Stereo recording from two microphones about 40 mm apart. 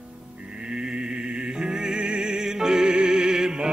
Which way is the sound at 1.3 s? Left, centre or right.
Right.